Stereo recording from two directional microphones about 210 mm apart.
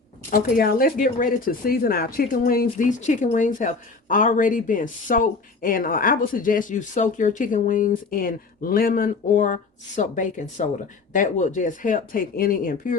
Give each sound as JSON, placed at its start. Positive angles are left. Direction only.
{"t": 0.3, "sound": "speech", "side_deg": 40}